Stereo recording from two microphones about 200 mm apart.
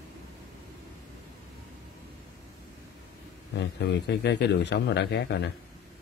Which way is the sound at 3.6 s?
60° left (ahead or behind).